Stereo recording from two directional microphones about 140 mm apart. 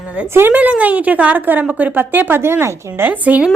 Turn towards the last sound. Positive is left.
turn(degrees=-10)  # may be behind; listen again after turning